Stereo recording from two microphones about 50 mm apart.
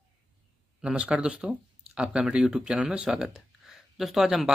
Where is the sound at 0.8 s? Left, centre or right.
Right.